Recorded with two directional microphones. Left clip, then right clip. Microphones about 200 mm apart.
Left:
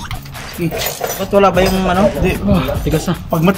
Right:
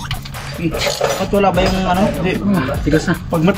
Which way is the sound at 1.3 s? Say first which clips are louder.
Left 5 dB; 45° left (ahead or behind).